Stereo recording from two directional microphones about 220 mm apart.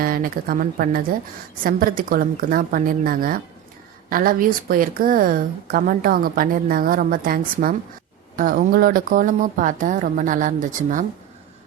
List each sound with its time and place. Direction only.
0.0 s a woman's voice: 40° right (ahead or behind)